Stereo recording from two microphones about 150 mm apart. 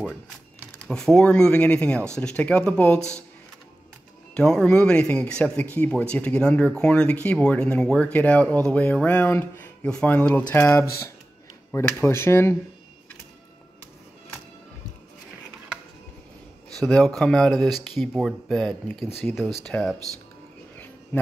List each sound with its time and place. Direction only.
0.7 s a man's voice: 5° left (ahead or behind)
4.3 s a man's voice: 5° left (ahead or behind)
16.7 s speech: 5° left (ahead or behind)
20.7 s a sound: 10° left (ahead or behind)